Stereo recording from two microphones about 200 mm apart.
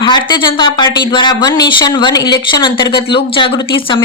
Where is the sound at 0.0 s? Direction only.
25° left (ahead or behind).